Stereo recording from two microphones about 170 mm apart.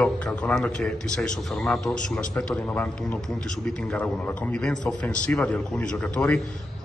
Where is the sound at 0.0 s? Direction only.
5° left (ahead or behind).